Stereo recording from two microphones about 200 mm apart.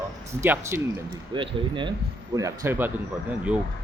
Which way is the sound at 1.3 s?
25° right (ahead or behind).